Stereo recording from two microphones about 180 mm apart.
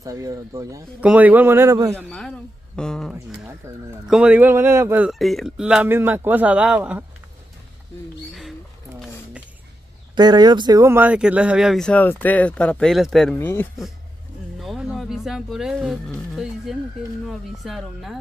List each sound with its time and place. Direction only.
0.0 s a man's voice: 20° right (ahead or behind)
2.0 s speech: 5° left (ahead or behind)
3.6 s a man's voice: 15° right (ahead or behind)
4.0 s a man's voice: 5° right (ahead or behind)
5.2 s a man's voice: centre (ahead or behind)
10.1 s speech: 25° right (ahead or behind); by 13.4 s centre (ahead or behind)
13.4 s speech: 10° left (ahead or behind)
14.6 s speech: centre (ahead or behind)